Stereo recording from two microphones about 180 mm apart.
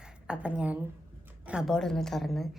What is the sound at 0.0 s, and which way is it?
A woman's voice, 5° right (ahead or behind).